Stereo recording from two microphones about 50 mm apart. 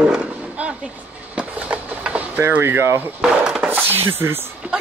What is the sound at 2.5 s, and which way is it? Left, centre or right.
Chopping, right.